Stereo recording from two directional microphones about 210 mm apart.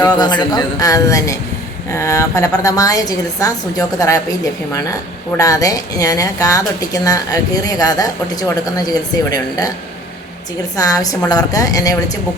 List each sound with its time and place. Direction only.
0.0 s a woman's voice: 20° left (ahead or behind)
10.8 s a woman's voice: 15° left (ahead or behind)